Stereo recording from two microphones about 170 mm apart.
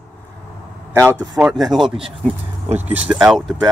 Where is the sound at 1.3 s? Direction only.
Centre (ahead or behind).